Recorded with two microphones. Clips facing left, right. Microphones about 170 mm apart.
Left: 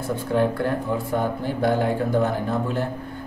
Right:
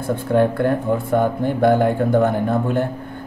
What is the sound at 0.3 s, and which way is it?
Speech, 55° right (ahead or behind).